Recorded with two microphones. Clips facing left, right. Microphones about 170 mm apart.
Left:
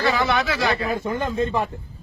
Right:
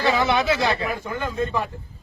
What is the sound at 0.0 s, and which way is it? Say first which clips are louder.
Speech: right 1 dB; 20° right (ahead or behind).